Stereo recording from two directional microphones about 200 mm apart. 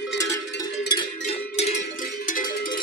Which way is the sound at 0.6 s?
25° left (ahead or behind).